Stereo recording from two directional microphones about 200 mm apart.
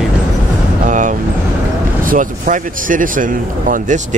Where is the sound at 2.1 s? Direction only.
40° right (ahead or behind).